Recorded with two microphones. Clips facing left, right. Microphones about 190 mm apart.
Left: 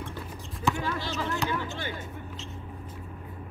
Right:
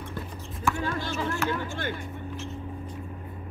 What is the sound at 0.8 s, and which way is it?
Speech, 50° right (ahead or behind).